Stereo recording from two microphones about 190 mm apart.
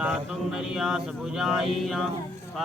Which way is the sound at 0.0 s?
5° right (ahead or behind).